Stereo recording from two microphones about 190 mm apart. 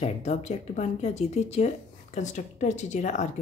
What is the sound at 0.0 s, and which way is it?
Speech, 35° left (ahead or behind).